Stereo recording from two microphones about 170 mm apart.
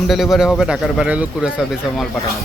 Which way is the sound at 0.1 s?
Centre (ahead or behind).